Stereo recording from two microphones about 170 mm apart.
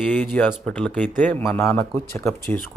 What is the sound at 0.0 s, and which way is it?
Speech, 10° left (ahead or behind).